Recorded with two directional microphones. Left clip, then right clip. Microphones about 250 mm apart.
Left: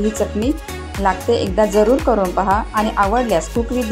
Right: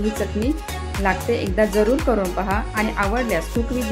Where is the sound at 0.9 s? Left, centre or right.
Centre.